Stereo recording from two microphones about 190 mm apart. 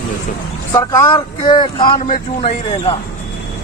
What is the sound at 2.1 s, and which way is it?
Speech, 40° left (ahead or behind).